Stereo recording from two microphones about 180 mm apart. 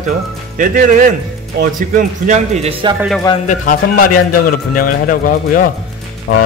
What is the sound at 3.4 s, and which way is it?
A man's voice, 50° left (ahead or behind).